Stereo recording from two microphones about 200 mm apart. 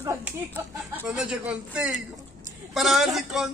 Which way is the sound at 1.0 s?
5° right (ahead or behind).